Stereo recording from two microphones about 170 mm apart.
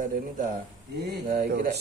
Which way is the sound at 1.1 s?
55° right (ahead or behind).